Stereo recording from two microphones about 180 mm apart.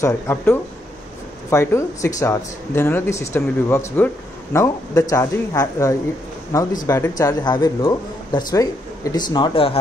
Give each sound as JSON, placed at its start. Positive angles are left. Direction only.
{"t": 0.0, "sound": "speech", "side_deg": 15}